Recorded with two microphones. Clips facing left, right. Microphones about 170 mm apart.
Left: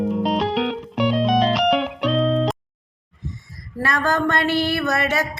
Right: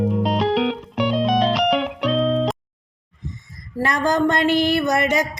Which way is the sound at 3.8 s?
15° right (ahead or behind).